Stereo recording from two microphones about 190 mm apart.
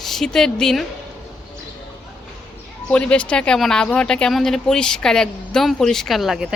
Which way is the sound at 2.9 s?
5° left (ahead or behind).